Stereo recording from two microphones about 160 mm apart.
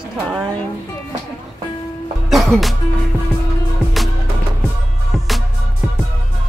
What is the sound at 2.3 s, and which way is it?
Music, centre (ahead or behind).